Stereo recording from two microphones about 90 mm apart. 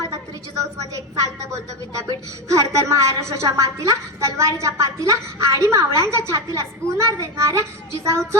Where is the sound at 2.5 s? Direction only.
35° right (ahead or behind).